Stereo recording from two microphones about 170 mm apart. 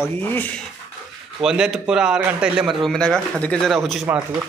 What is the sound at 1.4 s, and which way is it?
Speech, 5° right (ahead or behind).